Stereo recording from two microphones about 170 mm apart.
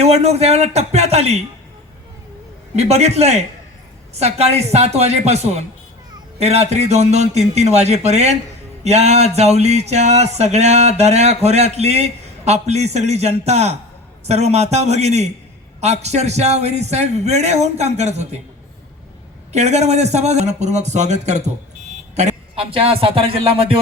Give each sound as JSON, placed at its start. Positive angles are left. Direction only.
{"t": 0.0, "sound": "speech", "side_deg": -40}
{"t": 2.7, "sound": "speech", "side_deg": -40}
{"t": 19.5, "sound": "speech", "side_deg": -40}